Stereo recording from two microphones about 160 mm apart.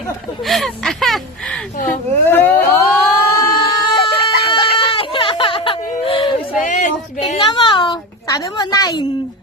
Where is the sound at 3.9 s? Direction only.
30° left (ahead or behind).